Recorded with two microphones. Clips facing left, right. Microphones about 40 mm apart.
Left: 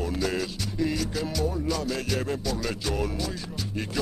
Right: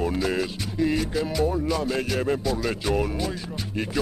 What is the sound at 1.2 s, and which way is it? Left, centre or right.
Speech, right.